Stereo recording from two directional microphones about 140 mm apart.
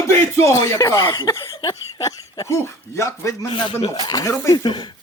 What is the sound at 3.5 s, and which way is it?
Speech, 35° left (ahead or behind).